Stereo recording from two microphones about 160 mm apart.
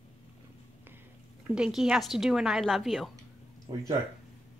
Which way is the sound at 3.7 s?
20° right (ahead or behind).